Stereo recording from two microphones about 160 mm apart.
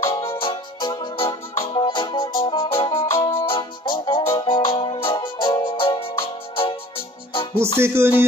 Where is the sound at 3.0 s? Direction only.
20° left (ahead or behind).